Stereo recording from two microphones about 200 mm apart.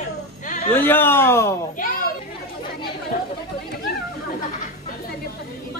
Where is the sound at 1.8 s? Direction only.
45° left (ahead or behind).